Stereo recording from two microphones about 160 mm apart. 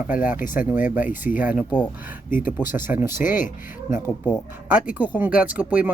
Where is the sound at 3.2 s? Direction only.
55° left (ahead or behind).